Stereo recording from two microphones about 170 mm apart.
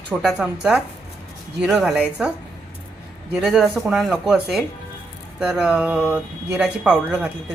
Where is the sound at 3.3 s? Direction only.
Centre (ahead or behind).